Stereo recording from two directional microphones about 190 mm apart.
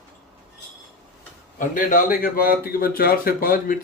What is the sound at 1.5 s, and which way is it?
A man's voice, 45° left (ahead or behind).